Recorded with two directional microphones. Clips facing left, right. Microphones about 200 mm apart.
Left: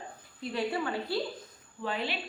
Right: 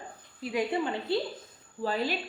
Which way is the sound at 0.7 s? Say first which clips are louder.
Right 3 dB; 20° right (ahead or behind).